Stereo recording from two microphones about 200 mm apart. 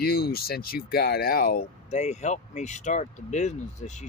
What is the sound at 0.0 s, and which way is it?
Speech, 50° left (ahead or behind).